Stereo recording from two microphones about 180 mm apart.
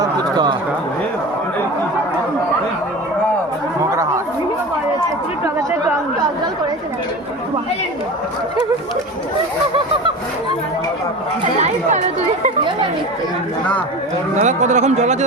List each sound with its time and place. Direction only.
0.0 s a sound: 25° right (ahead or behind)
11.6 s speech: 40° right (ahead or behind)
14.3 s speech: 40° right (ahead or behind)